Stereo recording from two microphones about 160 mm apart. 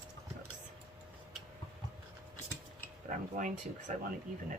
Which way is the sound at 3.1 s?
55° right (ahead or behind).